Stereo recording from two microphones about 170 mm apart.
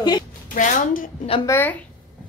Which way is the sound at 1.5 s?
15° left (ahead or behind).